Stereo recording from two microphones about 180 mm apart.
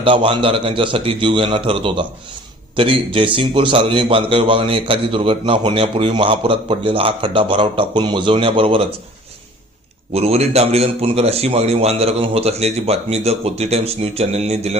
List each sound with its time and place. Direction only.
0.0 s a man's voice: 30° right (ahead or behind)
10.1 s a man's voice: 35° right (ahead or behind)